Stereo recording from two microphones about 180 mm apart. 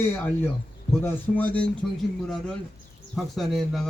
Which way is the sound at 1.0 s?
10° left (ahead or behind).